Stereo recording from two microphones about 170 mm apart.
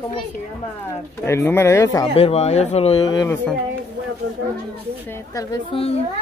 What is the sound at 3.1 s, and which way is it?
Speech, 25° left (ahead or behind).